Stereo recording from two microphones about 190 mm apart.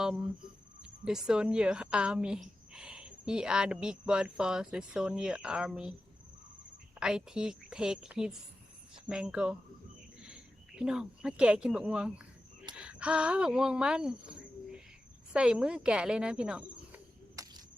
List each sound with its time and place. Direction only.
0.8 s speech: 5° right (ahead or behind)
7.0 s speech: 5° right (ahead or behind)
12.7 s cricket: 5° right (ahead or behind)
15.3 s speech: 5° right (ahead or behind)
17.3 s cricket: 20° right (ahead or behind)